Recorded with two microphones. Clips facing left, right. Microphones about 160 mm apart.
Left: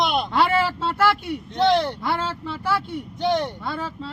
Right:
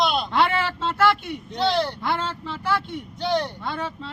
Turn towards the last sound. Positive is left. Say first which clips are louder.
# even
turn(degrees=5)  # may be behind; listen again after turning